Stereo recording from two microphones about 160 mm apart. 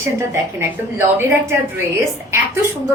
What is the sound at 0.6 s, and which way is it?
A woman's voice, 15° right (ahead or behind).